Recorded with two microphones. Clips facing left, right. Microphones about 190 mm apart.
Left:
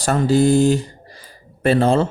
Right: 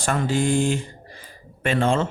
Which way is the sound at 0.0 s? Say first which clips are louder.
Left 7 dB; 35° left (ahead or behind).